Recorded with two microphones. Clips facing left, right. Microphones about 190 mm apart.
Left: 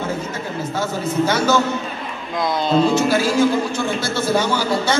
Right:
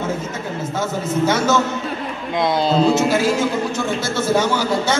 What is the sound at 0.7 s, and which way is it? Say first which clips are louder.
A man's voice: even; 20° right (ahead or behind).